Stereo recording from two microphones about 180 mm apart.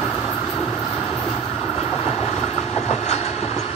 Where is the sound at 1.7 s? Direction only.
35° left (ahead or behind).